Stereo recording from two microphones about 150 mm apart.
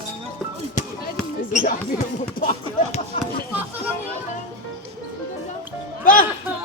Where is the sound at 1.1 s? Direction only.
5° right (ahead or behind).